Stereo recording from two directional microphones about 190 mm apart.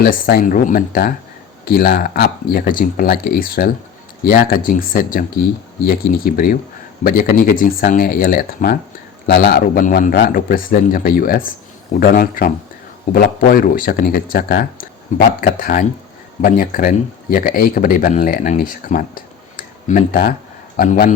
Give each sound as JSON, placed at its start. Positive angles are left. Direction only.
{"t": 0.0, "sound": "speech", "side_deg": 50}